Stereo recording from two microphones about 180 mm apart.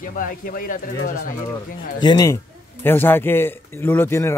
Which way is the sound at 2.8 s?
10° left (ahead or behind).